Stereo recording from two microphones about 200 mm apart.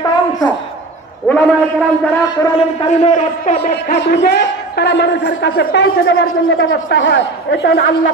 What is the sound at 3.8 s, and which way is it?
A man's voice, 55° left (ahead or behind).